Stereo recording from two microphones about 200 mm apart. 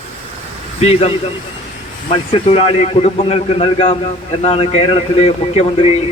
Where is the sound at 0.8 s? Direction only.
30° left (ahead or behind).